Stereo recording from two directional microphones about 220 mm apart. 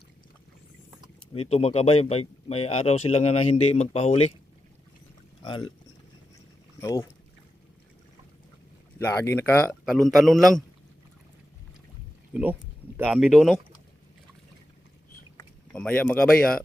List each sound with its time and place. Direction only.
1.4 s speech: 30° left (ahead or behind)
6.8 s speech: 15° left (ahead or behind)
9.0 s a man's voice: 10° left (ahead or behind)
12.3 s a man's voice: 5° right (ahead or behind)
15.4 s speech: 5° left (ahead or behind)